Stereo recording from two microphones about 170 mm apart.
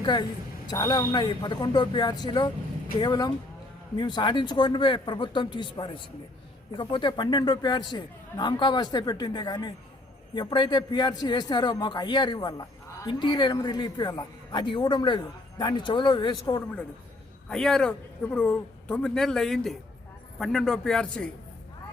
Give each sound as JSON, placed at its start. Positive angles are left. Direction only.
{"t": 0.0, "sound": "a man's voice", "side_deg": 25}
{"t": 17.5, "sound": "speech", "side_deg": 5}